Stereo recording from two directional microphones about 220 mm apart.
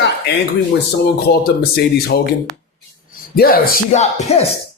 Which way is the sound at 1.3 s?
45° left (ahead or behind).